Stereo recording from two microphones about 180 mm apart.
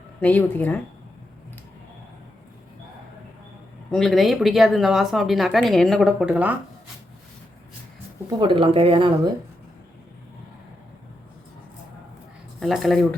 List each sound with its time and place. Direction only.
0.2 s speech: 10° left (ahead or behind)
3.9 s speech: centre (ahead or behind)
8.4 s speech: 30° right (ahead or behind)
12.5 s speech: centre (ahead or behind)